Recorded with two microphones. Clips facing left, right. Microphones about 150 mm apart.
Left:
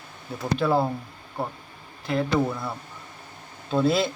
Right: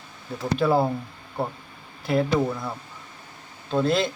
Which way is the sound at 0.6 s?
5° right (ahead or behind).